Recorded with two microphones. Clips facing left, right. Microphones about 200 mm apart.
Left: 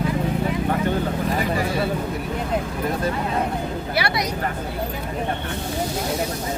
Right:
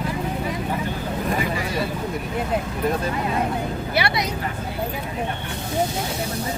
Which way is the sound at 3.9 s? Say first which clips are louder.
Right 1 dB; 25° right (ahead or behind).